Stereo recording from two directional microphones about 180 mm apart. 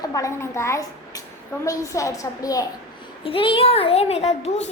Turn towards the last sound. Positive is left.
turn(degrees=40)  # may be behind; listen again after turning